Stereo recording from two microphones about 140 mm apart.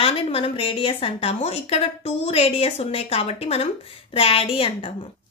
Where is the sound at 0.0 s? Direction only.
40° left (ahead or behind).